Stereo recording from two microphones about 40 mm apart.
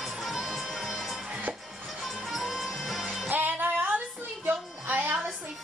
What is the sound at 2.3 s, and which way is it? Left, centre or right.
Music, centre.